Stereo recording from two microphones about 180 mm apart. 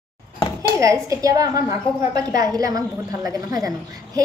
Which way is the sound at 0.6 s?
15° right (ahead or behind).